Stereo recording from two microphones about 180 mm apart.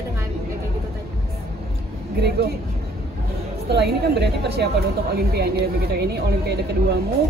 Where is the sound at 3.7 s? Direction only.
65° right (ahead or behind).